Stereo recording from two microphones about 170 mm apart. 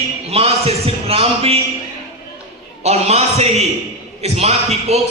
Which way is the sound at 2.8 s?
40° right (ahead or behind).